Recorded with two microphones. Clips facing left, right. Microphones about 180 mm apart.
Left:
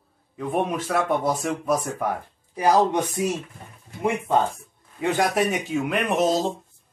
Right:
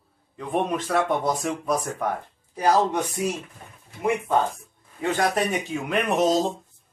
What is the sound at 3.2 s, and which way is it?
Speech, 20° left (ahead or behind).